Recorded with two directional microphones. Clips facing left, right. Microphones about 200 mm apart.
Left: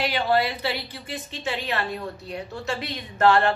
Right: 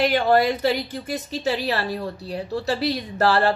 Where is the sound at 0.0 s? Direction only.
50° right (ahead or behind).